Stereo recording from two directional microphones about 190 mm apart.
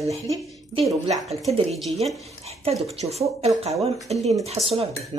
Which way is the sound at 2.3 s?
35° right (ahead or behind).